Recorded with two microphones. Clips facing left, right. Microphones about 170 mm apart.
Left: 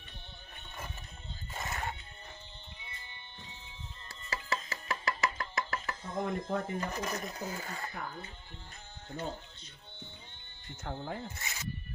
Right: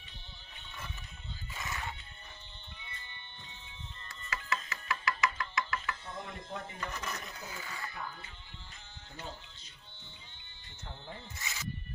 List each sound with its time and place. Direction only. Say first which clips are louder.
1.5 s music: left 3 dB; 50° left (ahead or behind)
2.8 s music: right 2 dB; 15° left (ahead or behind)
4.1 s music: left 1 dB; 35° left (ahead or behind)
10.8 s speech: left 8 dB; 45° left (ahead or behind)